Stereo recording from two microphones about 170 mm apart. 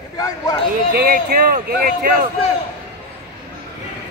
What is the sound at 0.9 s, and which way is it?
Speech, 60° right (ahead or behind).